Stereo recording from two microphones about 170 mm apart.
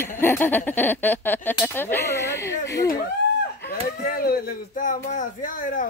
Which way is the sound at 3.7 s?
60° left (ahead or behind).